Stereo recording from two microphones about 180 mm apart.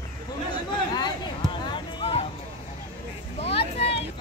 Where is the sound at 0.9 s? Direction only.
25° left (ahead or behind).